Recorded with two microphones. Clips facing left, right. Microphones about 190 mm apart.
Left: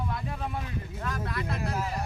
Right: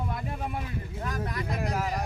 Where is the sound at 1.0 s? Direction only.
15° right (ahead or behind).